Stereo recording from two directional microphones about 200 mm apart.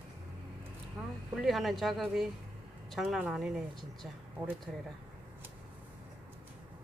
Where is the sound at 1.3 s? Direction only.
Centre (ahead or behind).